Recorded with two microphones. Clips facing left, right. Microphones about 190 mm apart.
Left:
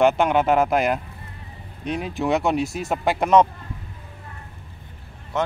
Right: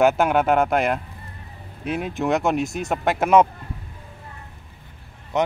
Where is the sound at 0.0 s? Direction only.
5° right (ahead or behind).